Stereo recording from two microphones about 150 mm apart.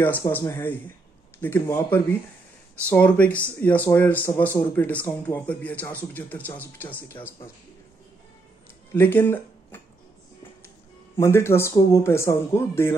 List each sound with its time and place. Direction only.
0.0 s speech: 15° left (ahead or behind)
8.9 s speech: 15° left (ahead or behind)
11.1 s speech: 15° left (ahead or behind)